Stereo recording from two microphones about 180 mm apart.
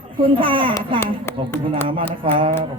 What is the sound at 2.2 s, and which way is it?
Speech, 30° right (ahead or behind).